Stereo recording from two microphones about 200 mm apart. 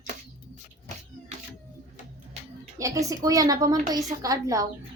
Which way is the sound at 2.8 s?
15° right (ahead or behind).